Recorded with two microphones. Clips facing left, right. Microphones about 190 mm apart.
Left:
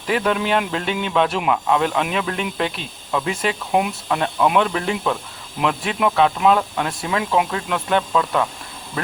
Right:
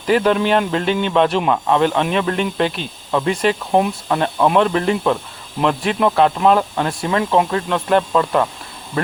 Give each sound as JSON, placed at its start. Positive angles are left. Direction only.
{"t": 0.1, "sound": "speech", "side_deg": 0}
{"t": 3.7, "sound": "speech", "side_deg": -35}
{"t": 4.1, "sound": "speech", "side_deg": 0}